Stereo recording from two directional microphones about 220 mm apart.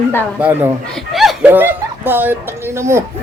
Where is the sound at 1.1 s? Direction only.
Centre (ahead or behind).